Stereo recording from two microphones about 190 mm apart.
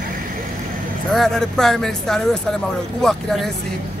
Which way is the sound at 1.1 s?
5° left (ahead or behind).